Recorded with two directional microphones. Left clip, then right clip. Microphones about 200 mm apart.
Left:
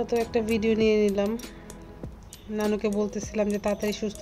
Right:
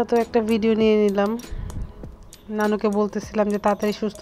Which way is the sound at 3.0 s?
15° right (ahead or behind).